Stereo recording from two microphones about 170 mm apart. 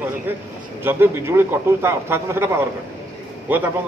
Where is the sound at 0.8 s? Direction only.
15° right (ahead or behind).